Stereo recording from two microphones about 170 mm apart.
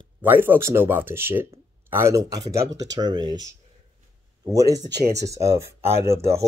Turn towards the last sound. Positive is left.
turn(degrees=-15)  # may be behind; listen again after turning